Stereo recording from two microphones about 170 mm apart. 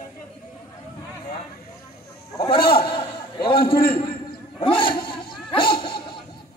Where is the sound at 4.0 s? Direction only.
30° left (ahead or behind).